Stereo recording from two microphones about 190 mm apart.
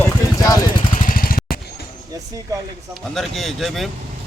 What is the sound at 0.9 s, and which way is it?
Vehicle, 45° left (ahead or behind).